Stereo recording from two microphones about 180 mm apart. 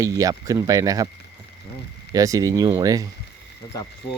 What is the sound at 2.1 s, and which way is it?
Speech, 20° right (ahead or behind).